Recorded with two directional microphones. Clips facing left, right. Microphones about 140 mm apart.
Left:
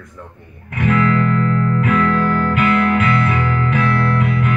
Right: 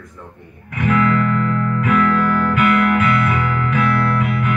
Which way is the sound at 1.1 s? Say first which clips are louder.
Left 1 dB; 30° left (ahead or behind).